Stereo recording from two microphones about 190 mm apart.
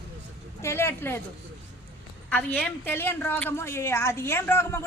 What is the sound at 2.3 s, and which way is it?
A woman's voice, 10° left (ahead or behind).